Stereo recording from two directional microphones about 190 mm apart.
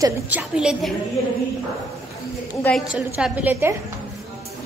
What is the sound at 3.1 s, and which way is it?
Speech, 10° right (ahead or behind).